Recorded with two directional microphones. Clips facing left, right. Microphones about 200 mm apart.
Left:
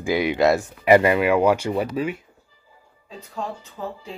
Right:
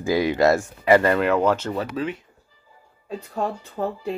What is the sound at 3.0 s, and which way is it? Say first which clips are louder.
Speech: right 5 dB; 60° right (ahead or behind).